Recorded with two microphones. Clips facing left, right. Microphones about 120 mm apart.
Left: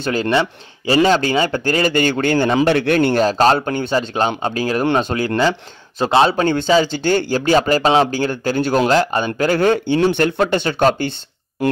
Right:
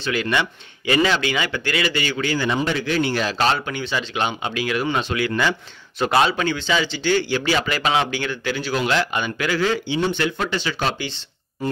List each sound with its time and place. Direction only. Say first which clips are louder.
0.1 s speech: left 5 dB; 35° left (ahead or behind); by 2.6 s 50° left (ahead or behind)
2.6 s speech: left 7 dB; 65° left (ahead or behind)
3.2 s speech: left 7 dB; 40° left (ahead or behind)
9.9 s speech: left 7 dB; 65° left (ahead or behind)
10.2 s speech: left 7 dB; 50° left (ahead or behind)
11.6 s speech: left 7 dB; 80° left